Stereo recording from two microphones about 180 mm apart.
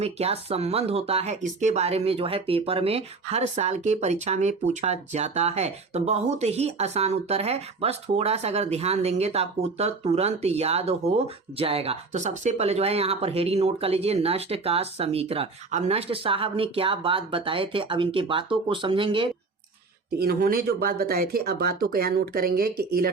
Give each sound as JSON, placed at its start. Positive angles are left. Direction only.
{"t": 0.0, "sound": "speech", "side_deg": -35}
{"t": 20.1, "sound": "speech", "side_deg": -60}